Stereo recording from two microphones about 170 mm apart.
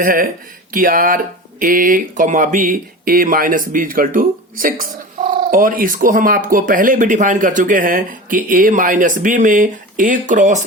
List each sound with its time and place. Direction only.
0.0 s speech: 55° right (ahead or behind)